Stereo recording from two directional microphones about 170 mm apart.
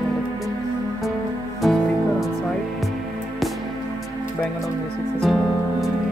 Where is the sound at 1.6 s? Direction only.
Centre (ahead or behind).